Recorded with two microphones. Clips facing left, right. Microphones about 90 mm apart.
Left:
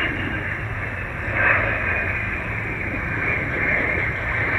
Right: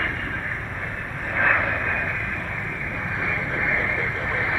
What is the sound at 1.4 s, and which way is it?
Vehicle, 5° right (ahead or behind).